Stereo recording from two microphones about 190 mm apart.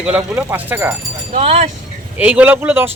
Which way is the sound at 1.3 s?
30° right (ahead or behind).